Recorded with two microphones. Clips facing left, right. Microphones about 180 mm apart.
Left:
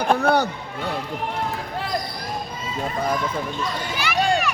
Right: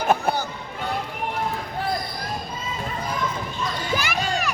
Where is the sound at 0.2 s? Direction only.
65° left (ahead or behind).